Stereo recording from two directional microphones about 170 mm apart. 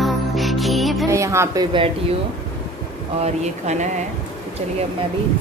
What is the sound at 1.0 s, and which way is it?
Speech, 20° right (ahead or behind).